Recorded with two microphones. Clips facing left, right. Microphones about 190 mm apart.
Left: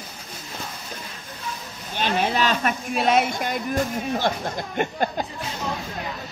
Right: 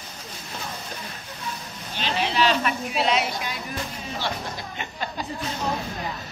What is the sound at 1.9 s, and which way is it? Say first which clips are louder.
Speech: left 3 dB; 50° left (ahead or behind).